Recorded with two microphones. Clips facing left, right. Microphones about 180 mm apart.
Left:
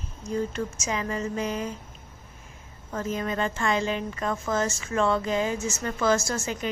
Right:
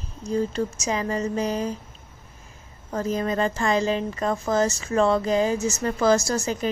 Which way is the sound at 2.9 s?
35° right (ahead or behind).